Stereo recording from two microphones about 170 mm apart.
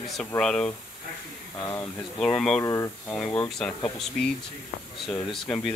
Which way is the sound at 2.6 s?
15° left (ahead or behind).